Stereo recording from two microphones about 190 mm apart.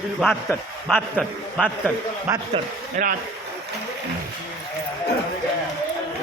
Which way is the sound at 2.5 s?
45° right (ahead or behind).